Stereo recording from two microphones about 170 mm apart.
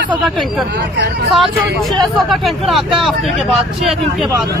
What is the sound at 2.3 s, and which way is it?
Speech, centre (ahead or behind).